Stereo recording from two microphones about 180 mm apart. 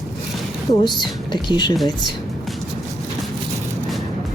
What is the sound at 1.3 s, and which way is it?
Speech, 25° left (ahead or behind).